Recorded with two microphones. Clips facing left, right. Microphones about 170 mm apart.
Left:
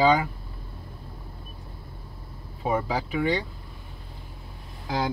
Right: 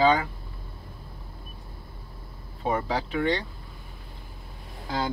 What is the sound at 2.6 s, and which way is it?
Speech, 10° left (ahead or behind).